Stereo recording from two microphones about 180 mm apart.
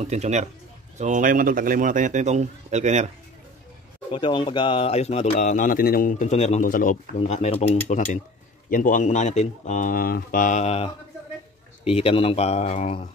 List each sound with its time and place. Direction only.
0.0 s a man's voice: 40° right (ahead or behind)
4.1 s speech: 25° left (ahead or behind); by 7.0 s 50° left (ahead or behind)
7.2 s speech: 35° left (ahead or behind)
8.6 s speech: 50° left (ahead or behind)